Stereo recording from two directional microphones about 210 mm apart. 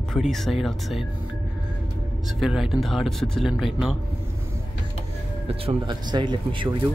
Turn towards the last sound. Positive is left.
turn(degrees=-25)  # may be behind; listen again after turning